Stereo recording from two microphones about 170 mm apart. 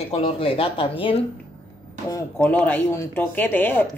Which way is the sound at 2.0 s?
15° left (ahead or behind).